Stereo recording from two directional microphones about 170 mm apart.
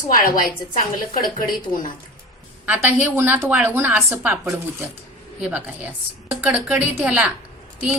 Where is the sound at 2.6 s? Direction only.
10° right (ahead or behind).